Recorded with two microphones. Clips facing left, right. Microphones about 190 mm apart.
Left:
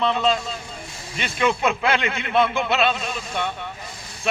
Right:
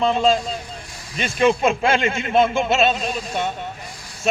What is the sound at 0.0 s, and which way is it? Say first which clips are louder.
A man's voice: right 3 dB; 45° right (ahead or behind).